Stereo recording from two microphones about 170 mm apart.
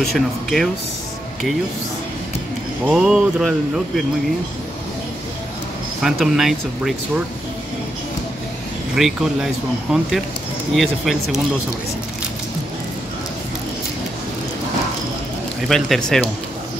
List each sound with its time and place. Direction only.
0.0 s speech: centre (ahead or behind)
2.8 s speech: 5° right (ahead or behind)
6.0 s speech: centre (ahead or behind)
8.9 s speech: centre (ahead or behind)
15.7 s speech: 5° left (ahead or behind)